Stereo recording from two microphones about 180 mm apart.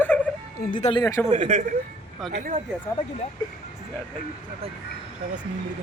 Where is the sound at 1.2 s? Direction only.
40° right (ahead or behind).